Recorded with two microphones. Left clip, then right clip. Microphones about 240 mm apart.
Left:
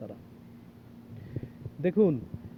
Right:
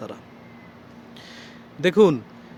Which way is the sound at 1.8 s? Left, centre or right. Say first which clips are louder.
Right 9 dB; centre.